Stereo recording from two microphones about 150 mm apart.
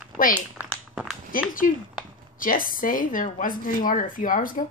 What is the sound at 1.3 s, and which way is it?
Speech, 65° left (ahead or behind).